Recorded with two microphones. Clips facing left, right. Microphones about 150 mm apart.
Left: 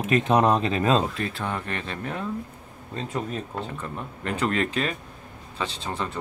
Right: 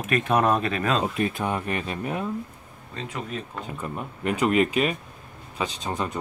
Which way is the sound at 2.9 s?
35° left (ahead or behind).